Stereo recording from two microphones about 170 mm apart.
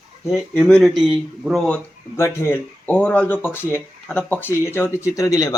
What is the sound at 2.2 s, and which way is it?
Speech, 15° left (ahead or behind).